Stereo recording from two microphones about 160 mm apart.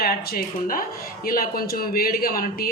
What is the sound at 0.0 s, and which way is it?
Speech, 65° left (ahead or behind).